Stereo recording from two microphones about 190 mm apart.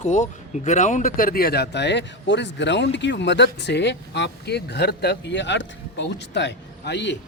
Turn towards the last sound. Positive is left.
turn(degrees=65)  # may be behind; listen again after turning